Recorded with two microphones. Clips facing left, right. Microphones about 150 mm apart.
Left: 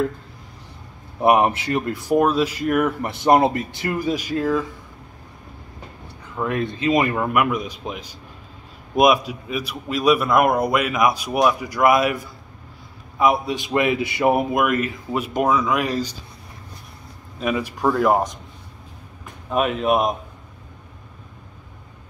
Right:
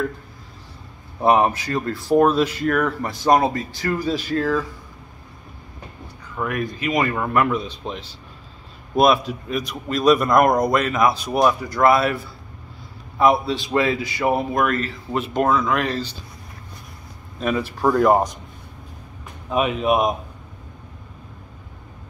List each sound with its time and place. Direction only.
1.2 s speech: 15° left (ahead or behind)
2.1 s a man's voice: 5° left (ahead or behind)
6.3 s a man's voice: 25° left (ahead or behind); by 16.1 s 10° left (ahead or behind)
17.4 s a man's voice: 10° left (ahead or behind)
19.5 s speech: centre (ahead or behind)